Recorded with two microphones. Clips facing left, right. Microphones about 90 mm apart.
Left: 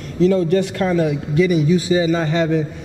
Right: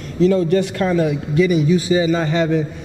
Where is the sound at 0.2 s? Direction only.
15° right (ahead or behind).